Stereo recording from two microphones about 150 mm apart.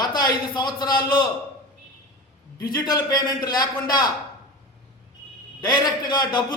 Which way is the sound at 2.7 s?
25° left (ahead or behind).